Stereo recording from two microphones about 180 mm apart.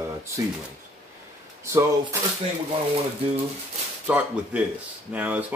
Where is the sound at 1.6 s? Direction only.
15° right (ahead or behind).